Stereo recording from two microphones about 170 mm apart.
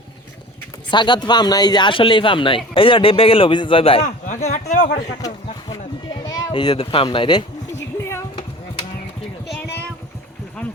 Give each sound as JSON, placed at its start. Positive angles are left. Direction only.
{"t": 0.9, "sound": "a man's voice", "side_deg": 25}
{"t": 4.0, "sound": "speech", "side_deg": 50}
{"t": 6.2, "sound": "a sound", "side_deg": 25}
{"t": 6.7, "sound": "speech", "side_deg": 35}